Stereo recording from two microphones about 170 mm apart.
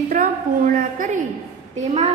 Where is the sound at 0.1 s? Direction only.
50° right (ahead or behind).